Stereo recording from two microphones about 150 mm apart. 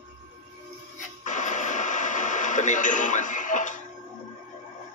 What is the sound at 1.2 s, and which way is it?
Radio, 55° left (ahead or behind).